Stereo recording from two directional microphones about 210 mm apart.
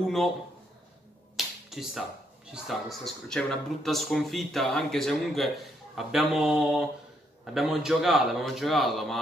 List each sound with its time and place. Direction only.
1.3 s finger snapping: centre (ahead or behind)
2.5 s speech: centre (ahead or behind)